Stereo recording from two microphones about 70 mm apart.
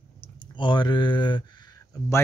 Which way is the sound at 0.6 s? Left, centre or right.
Left.